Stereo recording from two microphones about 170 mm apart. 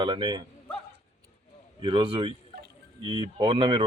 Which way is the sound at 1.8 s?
25° right (ahead or behind).